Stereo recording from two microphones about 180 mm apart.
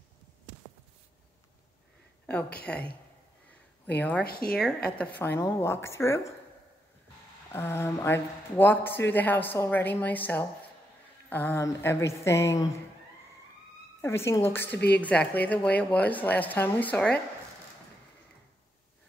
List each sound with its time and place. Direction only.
2.6 s a woman's voice: 5° left (ahead or behind)
4.2 s speech: 55° left (ahead or behind)
4.5 s a woman's voice: centre (ahead or behind)
7.5 s a woman's voice: 15° left (ahead or behind)
14.0 s a woman's voice: 15° left (ahead or behind)